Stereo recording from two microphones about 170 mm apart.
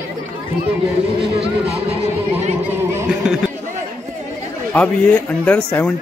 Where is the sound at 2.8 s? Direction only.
15° right (ahead or behind).